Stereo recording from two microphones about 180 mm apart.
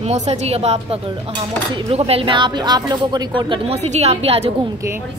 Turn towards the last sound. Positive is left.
turn(degrees=-35)  # may be behind; listen again after turning